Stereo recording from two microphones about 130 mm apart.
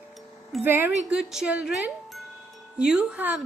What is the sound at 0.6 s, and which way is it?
Speech, 15° right (ahead or behind).